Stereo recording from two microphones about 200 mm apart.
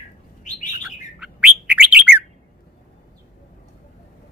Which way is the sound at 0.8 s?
5° right (ahead or behind).